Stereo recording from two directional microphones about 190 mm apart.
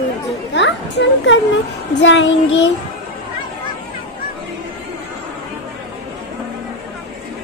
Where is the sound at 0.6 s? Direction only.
70° left (ahead or behind).